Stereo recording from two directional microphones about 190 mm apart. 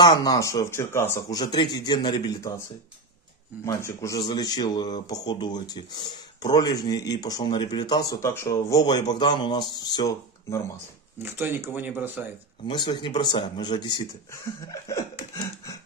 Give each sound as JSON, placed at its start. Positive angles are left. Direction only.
{"t": 0.0, "sound": "speech", "side_deg": 20}
{"t": 3.6, "sound": "speech", "side_deg": 15}
{"t": 11.2, "sound": "speech", "side_deg": -10}
{"t": 12.6, "sound": "speech", "side_deg": 25}